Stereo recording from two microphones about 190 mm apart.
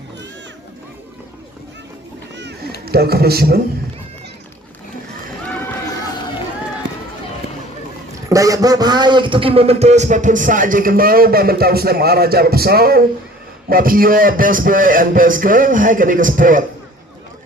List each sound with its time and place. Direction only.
2.3 s a sound: 65° right (ahead or behind)
2.8 s a man's voice: 55° right (ahead or behind)
6.8 s run: 65° right (ahead or behind)
8.3 s a man's voice: 15° right (ahead or behind); by 16.6 s 45° right (ahead or behind)